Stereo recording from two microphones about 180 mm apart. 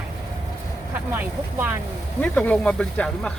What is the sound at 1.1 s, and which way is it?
Speech, 10° right (ahead or behind).